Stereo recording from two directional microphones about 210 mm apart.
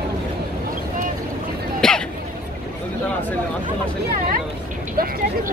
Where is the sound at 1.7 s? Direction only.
5° left (ahead or behind).